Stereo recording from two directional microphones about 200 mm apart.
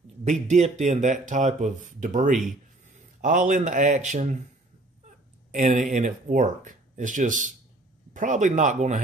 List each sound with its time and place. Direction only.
0.2 s speech: 35° right (ahead or behind)
5.5 s speech: 40° right (ahead or behind)